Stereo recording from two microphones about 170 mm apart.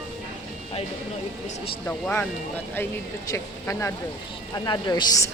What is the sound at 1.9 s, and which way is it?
Speech, 10° left (ahead or behind).